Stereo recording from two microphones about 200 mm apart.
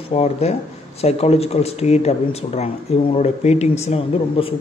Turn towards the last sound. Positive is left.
turn(degrees=30)  # may be behind; listen again after turning